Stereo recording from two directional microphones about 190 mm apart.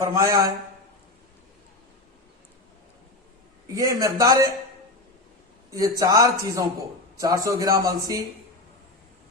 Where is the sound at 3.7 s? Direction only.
15° right (ahead or behind).